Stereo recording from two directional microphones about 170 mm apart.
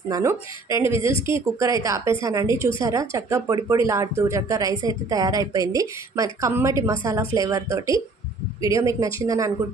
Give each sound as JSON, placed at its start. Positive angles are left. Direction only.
{"t": 0.1, "sound": "speech", "side_deg": -20}